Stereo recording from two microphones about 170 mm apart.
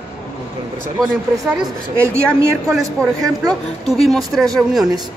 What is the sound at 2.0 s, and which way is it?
Speech, 15° right (ahead or behind).